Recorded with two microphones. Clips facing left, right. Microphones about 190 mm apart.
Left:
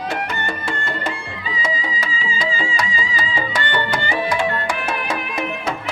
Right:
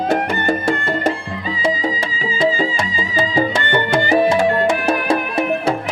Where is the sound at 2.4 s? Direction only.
35° right (ahead or behind).